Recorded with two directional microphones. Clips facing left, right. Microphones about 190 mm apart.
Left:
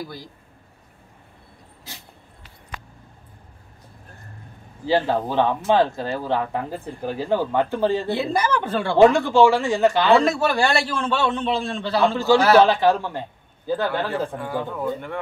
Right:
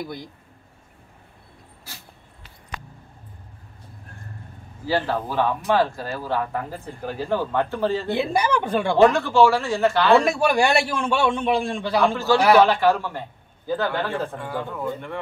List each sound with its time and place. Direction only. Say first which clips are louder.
4.8 s speech: left 3 dB; 20° left (ahead or behind)
8.1 s a man's voice: even; 15° right (ahead or behind)
8.9 s speech: left 2 dB; 15° left (ahead or behind)
10.2 s a man's voice: right 1 dB; 15° right (ahead or behind)
12.6 s speech: left 1 dB; 15° left (ahead or behind)